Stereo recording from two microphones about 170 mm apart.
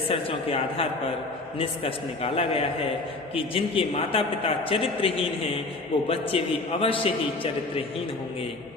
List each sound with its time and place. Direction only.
0.1 s a man's voice: 35° left (ahead or behind)